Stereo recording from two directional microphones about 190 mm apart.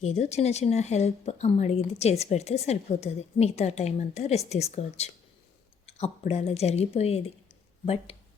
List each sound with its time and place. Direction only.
0.0 s a woman's voice: 35° left (ahead or behind)